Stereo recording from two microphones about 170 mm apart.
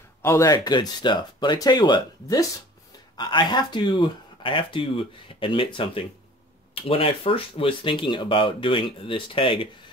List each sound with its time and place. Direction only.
0.2 s speech: 15° left (ahead or behind)